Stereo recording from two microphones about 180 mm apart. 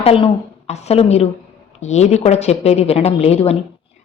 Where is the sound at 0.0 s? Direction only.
30° left (ahead or behind).